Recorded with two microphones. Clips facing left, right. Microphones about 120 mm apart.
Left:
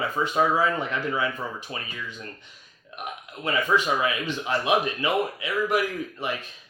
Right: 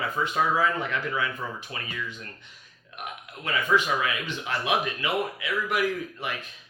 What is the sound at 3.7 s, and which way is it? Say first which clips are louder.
Speech: even; 25° left (ahead or behind).